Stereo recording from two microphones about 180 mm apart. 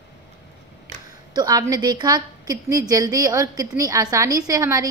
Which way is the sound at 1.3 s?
20° right (ahead or behind).